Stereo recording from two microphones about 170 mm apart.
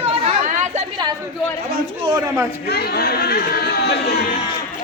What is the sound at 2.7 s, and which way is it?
Speech, 70° left (ahead or behind).